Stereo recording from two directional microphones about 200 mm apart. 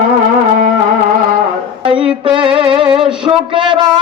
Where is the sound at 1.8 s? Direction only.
25° right (ahead or behind).